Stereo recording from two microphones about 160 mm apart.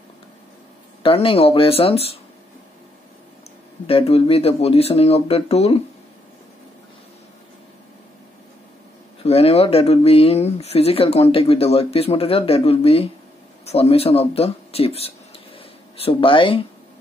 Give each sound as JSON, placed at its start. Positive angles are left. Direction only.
{"t": 1.0, "sound": "speech", "side_deg": 35}
{"t": 3.8, "sound": "speech", "side_deg": 40}
{"t": 9.2, "sound": "speech", "side_deg": 40}